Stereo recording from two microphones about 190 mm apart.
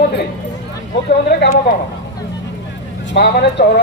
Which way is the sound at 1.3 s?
60° left (ahead or behind).